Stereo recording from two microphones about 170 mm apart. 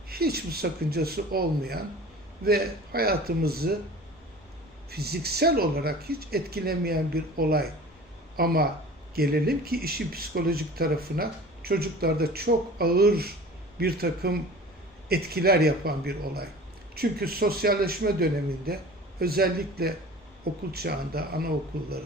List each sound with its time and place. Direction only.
0.1 s speech: 65° right (ahead or behind)
4.9 s speech: 70° right (ahead or behind)